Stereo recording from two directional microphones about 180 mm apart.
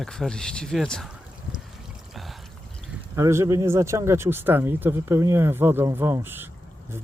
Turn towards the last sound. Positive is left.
turn(degrees=-10)  # may be behind; listen again after turning